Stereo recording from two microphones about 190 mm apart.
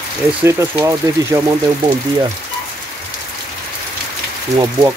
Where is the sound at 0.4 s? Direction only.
10° right (ahead or behind).